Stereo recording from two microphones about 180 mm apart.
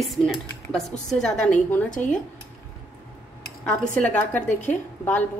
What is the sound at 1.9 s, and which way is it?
Speech, 45° left (ahead or behind).